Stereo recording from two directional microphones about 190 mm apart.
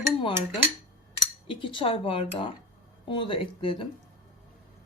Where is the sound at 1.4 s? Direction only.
25° left (ahead or behind).